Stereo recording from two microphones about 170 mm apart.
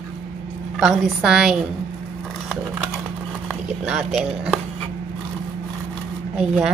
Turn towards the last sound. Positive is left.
turn(degrees=-5)  # may be behind; listen again after turning